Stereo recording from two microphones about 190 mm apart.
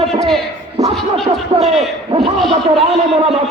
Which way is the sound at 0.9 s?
Centre (ahead or behind).